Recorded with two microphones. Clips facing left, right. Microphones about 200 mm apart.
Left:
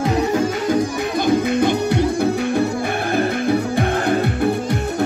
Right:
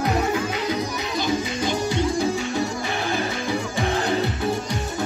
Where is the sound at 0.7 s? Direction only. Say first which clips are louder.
Left 7 dB; 55° left (ahead or behind).